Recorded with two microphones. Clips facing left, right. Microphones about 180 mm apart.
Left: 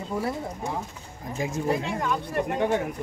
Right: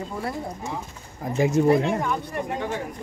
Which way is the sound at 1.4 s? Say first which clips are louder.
Right 8 dB; 75° right (ahead or behind).